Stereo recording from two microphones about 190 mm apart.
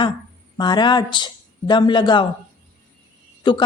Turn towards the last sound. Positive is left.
turn(degrees=25)  # may be behind; listen again after turning